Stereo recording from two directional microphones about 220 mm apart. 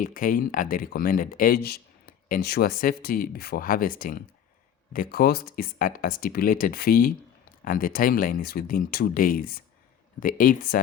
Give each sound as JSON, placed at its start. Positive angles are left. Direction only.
{"t": 0.0, "sound": "speech", "side_deg": 40}